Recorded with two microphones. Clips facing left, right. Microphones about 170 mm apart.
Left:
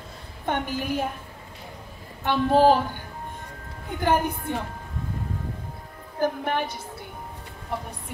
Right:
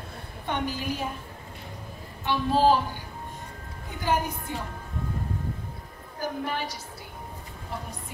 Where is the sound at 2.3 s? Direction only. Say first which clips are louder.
Left 4 dB; 55° left (ahead or behind).